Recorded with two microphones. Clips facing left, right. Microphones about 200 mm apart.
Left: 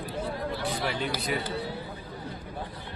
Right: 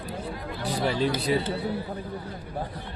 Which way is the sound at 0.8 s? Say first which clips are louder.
Right 5 dB; 30° right (ahead or behind).